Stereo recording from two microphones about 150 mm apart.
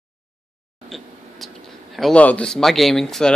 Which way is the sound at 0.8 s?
Centre (ahead or behind).